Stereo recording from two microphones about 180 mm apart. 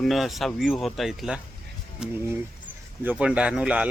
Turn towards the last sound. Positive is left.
turn(degrees=-5)  # may be behind; listen again after turning